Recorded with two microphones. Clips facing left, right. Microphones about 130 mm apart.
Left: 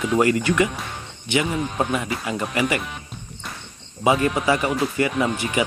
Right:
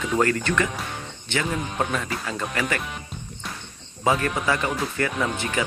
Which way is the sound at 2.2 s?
10° left (ahead or behind).